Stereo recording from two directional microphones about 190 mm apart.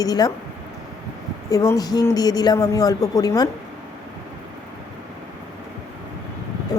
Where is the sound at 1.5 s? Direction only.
15° left (ahead or behind).